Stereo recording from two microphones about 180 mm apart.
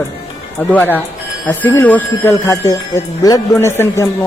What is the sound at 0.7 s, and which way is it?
Speech, 10° left (ahead or behind).